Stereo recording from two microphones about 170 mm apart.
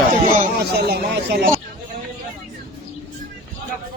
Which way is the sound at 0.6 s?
70° right (ahead or behind).